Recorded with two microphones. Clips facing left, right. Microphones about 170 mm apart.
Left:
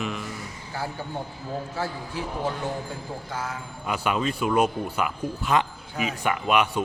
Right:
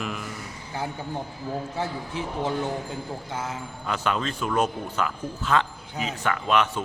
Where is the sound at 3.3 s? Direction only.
20° right (ahead or behind).